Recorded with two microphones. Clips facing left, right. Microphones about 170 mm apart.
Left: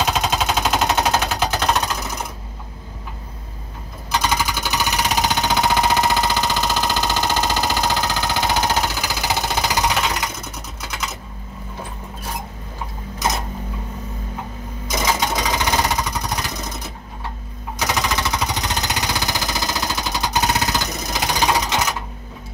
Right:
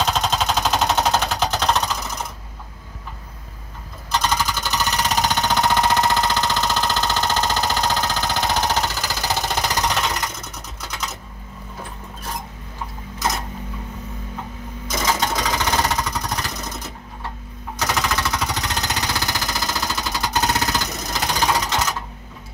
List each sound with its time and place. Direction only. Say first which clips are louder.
0.0 s a sound: left 1 dB; 10° left (ahead or behind)
4.1 s jackhammer: left 1 dB; 10° left (ahead or behind)
10.8 s typing: left 1 dB; 5° left (ahead or behind)
14.9 s jackhammer: left 1 dB; 15° left (ahead or behind)
17.7 s jackhammer: left 1 dB; 15° left (ahead or behind)